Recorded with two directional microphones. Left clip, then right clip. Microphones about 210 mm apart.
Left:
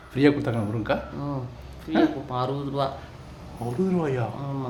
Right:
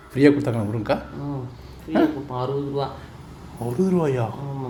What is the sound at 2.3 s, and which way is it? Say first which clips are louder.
Speech: right 1 dB; 10° left (ahead or behind).